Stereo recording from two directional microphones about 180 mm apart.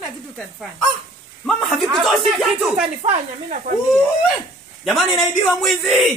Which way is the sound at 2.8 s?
40° right (ahead or behind).